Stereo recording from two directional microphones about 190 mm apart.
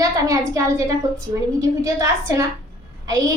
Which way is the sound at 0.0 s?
15° right (ahead or behind).